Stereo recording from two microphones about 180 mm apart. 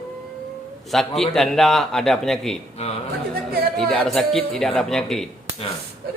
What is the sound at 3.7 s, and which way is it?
Speech, 5° left (ahead or behind).